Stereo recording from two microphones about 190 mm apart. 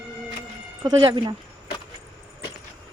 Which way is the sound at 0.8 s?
25° right (ahead or behind).